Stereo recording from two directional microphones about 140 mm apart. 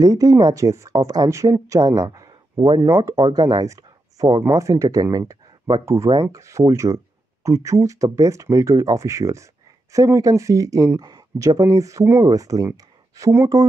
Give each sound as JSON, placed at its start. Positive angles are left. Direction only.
{"t": 0.0, "sound": "speech", "side_deg": -25}